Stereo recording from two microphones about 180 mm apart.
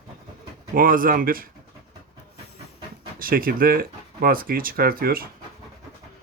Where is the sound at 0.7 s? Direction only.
50° right (ahead or behind).